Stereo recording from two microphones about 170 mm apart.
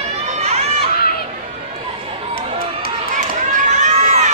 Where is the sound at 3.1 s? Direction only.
45° right (ahead or behind).